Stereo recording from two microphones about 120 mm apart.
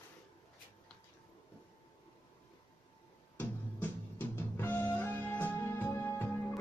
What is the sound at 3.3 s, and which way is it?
Music, 15° left (ahead or behind).